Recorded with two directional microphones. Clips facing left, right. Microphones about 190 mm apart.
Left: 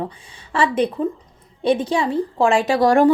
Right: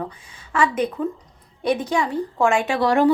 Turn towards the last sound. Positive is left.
turn(degrees=45)  # may be behind; listen again after turning